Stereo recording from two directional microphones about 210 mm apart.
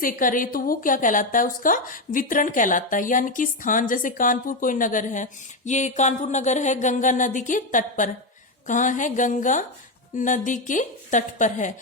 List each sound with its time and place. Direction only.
0.0 s a woman's voice: 40° left (ahead or behind)